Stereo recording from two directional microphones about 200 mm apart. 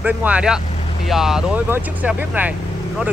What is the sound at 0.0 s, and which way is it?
Speech, 5° right (ahead or behind).